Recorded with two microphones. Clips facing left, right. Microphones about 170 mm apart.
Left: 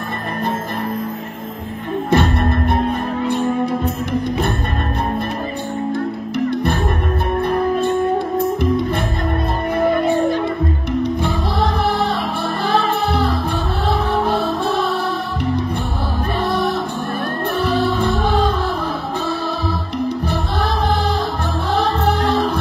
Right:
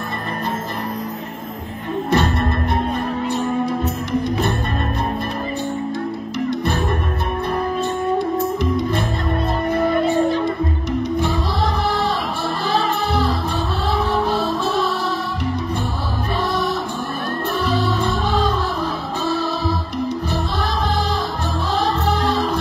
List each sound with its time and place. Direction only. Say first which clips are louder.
2.0 s music: left 2 dB; 50° left (ahead or behind)
5.9 s music: left 3 dB; 55° left (ahead or behind)
10.9 s music: left 1 dB; 55° left (ahead or behind)
12.6 s music: left 3 dB; 55° left (ahead or behind)
17.6 s music: left 3 dB; 55° left (ahead or behind)
21.7 s music: left 2 dB; 55° left (ahead or behind)